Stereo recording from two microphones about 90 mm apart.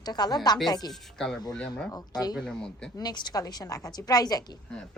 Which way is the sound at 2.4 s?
10° left (ahead or behind).